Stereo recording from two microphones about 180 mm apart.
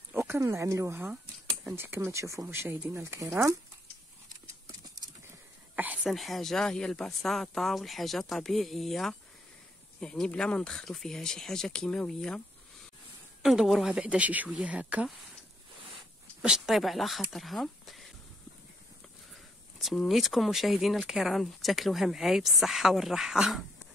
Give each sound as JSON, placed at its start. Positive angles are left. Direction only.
{"t": 0.1, "sound": "speech", "side_deg": -15}
{"t": 5.8, "sound": "speech", "side_deg": -5}
{"t": 13.4, "sound": "speech", "side_deg": 0}
{"t": 16.4, "sound": "speech", "side_deg": 0}
{"t": 19.8, "sound": "speech", "side_deg": 0}